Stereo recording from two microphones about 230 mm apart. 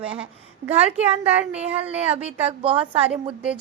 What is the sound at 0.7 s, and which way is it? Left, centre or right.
Speech, right.